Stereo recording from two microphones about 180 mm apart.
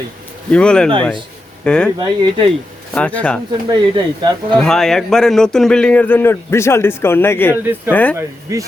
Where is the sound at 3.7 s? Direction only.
25° right (ahead or behind).